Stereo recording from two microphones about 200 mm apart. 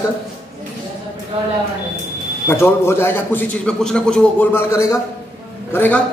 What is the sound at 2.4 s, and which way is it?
A man's voice, 15° left (ahead or behind).